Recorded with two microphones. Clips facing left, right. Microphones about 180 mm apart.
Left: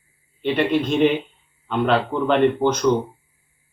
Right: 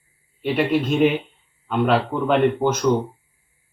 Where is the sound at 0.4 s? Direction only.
5° right (ahead or behind).